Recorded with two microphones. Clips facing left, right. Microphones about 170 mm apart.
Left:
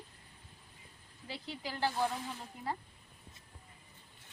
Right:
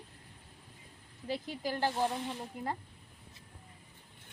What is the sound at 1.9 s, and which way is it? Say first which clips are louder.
Speech: right 2 dB; 25° right (ahead or behind).